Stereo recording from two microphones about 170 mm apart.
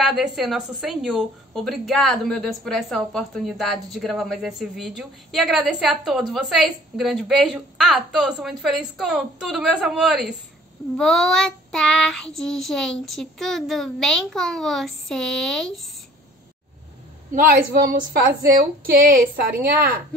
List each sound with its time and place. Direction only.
0.0 s a woman's voice: centre (ahead or behind)
17.7 s a woman's voice: 55° right (ahead or behind)